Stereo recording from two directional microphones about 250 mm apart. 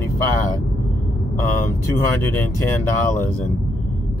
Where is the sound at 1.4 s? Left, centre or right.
Centre.